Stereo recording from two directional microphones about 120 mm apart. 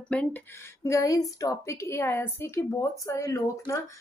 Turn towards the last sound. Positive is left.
turn(degrees=25)  # may be behind; listen again after turning